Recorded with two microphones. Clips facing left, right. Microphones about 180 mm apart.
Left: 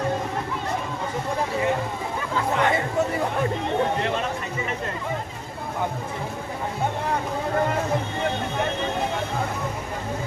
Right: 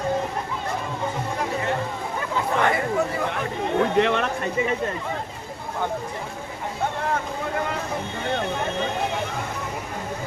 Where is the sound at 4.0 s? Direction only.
75° right (ahead or behind).